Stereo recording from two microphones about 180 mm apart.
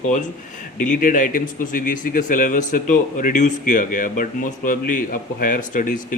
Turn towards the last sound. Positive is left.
turn(degrees=50)  # may be behind; listen again after turning